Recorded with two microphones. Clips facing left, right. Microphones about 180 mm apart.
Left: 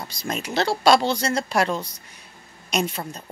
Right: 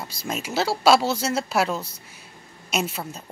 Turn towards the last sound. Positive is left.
turn(degrees=-5)  # may be behind; listen again after turning